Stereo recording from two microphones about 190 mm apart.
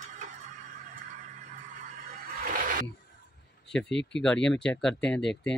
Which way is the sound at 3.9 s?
70° left (ahead or behind).